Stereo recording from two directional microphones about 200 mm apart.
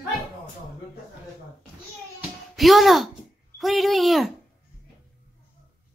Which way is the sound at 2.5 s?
Centre (ahead or behind).